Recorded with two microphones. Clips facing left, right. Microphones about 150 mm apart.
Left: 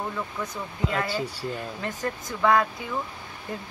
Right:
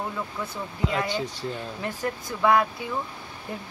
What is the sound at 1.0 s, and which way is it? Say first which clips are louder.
Speech: even; 5° left (ahead or behind).